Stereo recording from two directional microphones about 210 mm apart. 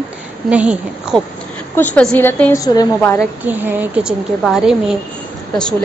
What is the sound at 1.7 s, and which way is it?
Speech, 10° left (ahead or behind).